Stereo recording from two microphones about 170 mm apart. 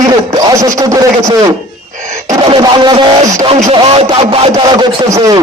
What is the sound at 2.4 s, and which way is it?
A man's voice, 25° right (ahead or behind).